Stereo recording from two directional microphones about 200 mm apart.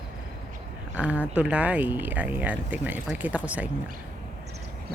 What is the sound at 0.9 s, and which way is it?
Speech, 5° right (ahead or behind).